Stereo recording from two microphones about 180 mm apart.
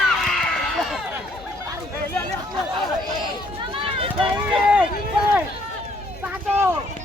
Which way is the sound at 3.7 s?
30° right (ahead or behind).